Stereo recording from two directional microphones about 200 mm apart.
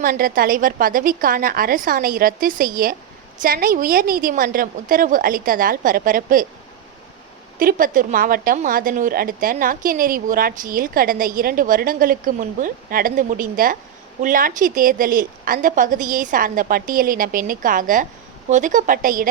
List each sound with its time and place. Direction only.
0.0 s a woman's voice: 45° right (ahead or behind)
7.6 s a woman's voice: 45° right (ahead or behind)